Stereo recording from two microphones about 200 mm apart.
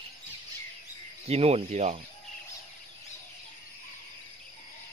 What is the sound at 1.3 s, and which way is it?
Speech, 30° right (ahead or behind).